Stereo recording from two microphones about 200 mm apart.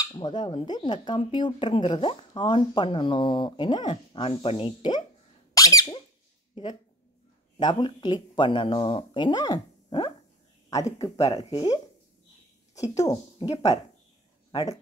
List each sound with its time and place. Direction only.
0.1 s speech: 25° left (ahead or behind)
5.5 s squeak: 20° left (ahead or behind)
6.5 s speech: 25° left (ahead or behind)
11.1 s speech: 15° left (ahead or behind)
11.4 s speech: 30° left (ahead or behind)
12.9 s speech: 20° left (ahead or behind)
14.5 s speech: 20° left (ahead or behind)